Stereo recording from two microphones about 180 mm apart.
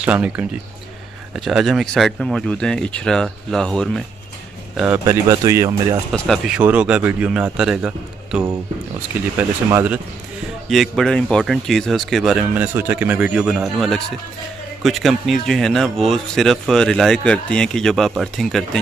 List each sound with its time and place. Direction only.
0.0 s speech: 5° right (ahead or behind)
4.7 s speech: 10° right (ahead or behind)
6.1 s speech: centre (ahead or behind)
10.7 s speech: centre (ahead or behind)